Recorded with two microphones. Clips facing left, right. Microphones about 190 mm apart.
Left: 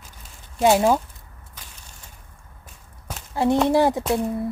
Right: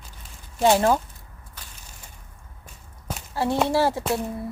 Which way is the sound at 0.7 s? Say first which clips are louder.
Left 2 dB; 10° left (ahead or behind).